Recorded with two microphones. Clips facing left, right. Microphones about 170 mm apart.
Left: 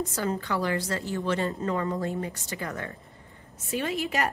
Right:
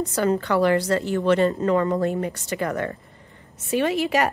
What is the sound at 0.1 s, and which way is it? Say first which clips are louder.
A woman's voice: right 8 dB; 70° right (ahead or behind).